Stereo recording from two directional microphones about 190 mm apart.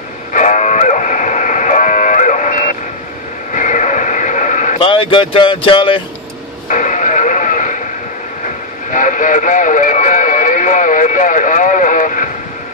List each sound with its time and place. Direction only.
0.3 s a sound: 40° left (ahead or behind)
3.5 s sheep: 40° left (ahead or behind)
4.7 s speech: 30° left (ahead or behind)
6.7 s music: 40° left (ahead or behind)
8.9 s radio: 45° left (ahead or behind)